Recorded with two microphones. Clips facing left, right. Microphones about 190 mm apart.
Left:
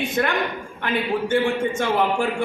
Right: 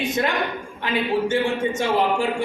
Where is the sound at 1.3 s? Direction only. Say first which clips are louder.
Left 1 dB; 55° left (ahead or behind).